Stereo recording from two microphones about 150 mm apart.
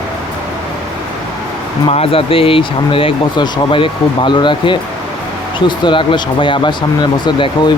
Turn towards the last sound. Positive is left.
turn(degrees=30)  # may be behind; listen again after turning